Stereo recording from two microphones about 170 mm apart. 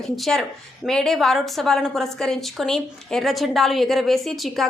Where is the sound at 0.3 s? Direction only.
Centre (ahead or behind).